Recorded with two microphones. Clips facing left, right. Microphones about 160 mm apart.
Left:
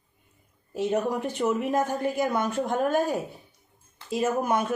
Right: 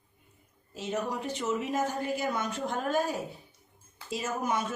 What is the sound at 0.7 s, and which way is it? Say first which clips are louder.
A woman's voice: left 7 dB; 55° left (ahead or behind).